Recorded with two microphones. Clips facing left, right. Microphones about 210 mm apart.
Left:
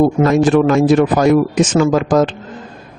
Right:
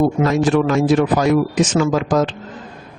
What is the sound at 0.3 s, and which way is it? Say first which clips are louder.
Speech: left 4 dB; 50° left (ahead or behind).